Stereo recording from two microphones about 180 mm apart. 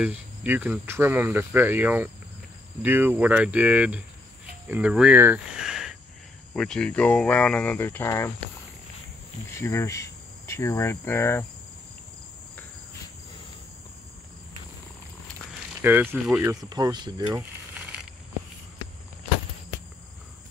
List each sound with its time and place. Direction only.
0.0 s speech: 5° right (ahead or behind); by 8.3 s 15° left (ahead or behind)
9.6 s cricket: 15° left (ahead or behind)
15.8 s speech: 10° right (ahead or behind)
16.4 s speech: 20° right (ahead or behind)